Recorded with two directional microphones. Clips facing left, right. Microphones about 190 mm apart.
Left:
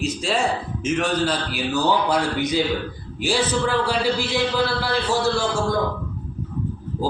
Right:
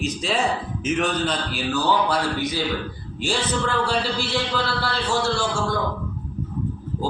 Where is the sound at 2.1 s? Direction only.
20° left (ahead or behind).